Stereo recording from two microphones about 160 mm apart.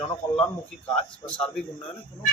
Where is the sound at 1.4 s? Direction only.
5° left (ahead or behind).